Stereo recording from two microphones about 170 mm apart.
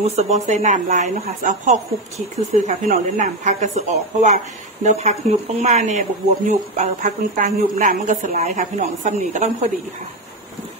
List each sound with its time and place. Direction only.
0.0 s a woman's voice: 40° right (ahead or behind)